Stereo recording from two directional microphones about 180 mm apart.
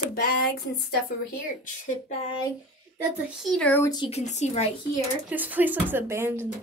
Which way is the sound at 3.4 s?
5° left (ahead or behind).